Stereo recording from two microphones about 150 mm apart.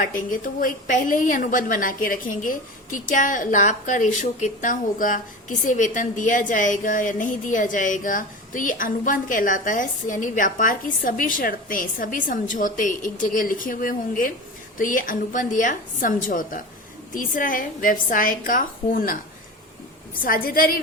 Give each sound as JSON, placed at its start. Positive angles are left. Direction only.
{"t": 0.0, "sound": "a woman's voice", "side_deg": 65}
{"t": 20.2, "sound": "a woman's voice", "side_deg": 70}